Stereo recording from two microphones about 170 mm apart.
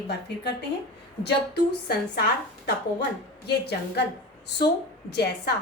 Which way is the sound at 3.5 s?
75° left (ahead or behind).